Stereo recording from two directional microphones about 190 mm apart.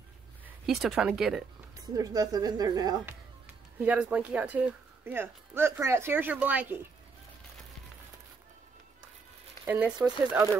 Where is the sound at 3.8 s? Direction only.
5° right (ahead or behind).